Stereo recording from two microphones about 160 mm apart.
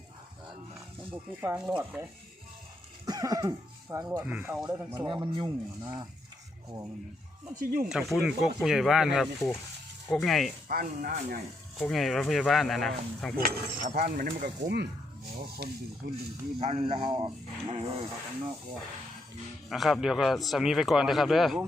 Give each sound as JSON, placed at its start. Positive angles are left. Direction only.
{"t": 1.1, "sound": "speech", "side_deg": -10}
{"t": 3.1, "sound": "speech", "side_deg": -20}
{"t": 4.3, "sound": "speech", "side_deg": -10}
{"t": 4.9, "sound": "speech", "side_deg": -25}
{"t": 7.6, "sound": "speech", "side_deg": -65}
{"t": 7.9, "sound": "a man's voice", "side_deg": -5}
{"t": 10.7, "sound": "speech", "side_deg": -60}
{"t": 11.9, "sound": "a man's voice", "side_deg": 0}
{"t": 13.4, "sound": "speech", "side_deg": -70}
{"t": 15.4, "sound": "speech", "side_deg": -75}
{"t": 16.6, "sound": "speech", "side_deg": -40}
{"t": 19.7, "sound": "a man's voice", "side_deg": 0}